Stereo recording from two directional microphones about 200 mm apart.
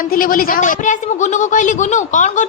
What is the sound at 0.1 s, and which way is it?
A woman's voice, 45° left (ahead or behind).